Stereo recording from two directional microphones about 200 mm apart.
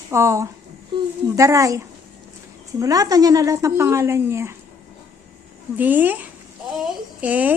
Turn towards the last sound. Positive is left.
turn(degrees=-5)  # may be behind; listen again after turning